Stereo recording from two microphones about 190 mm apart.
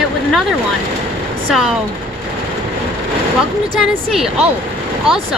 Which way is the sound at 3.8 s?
Centre (ahead or behind).